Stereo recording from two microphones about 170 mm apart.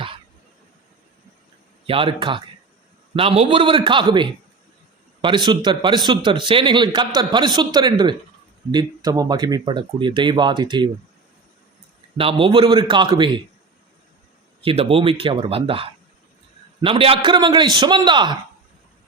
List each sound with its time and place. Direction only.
1.9 s speech: 30° right (ahead or behind)
3.2 s speech: 35° right (ahead or behind)
12.1 s speech: 30° right (ahead or behind)
14.6 s speech: 35° right (ahead or behind)